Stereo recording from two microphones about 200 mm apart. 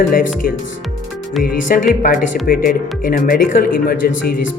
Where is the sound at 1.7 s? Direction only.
45° left (ahead or behind).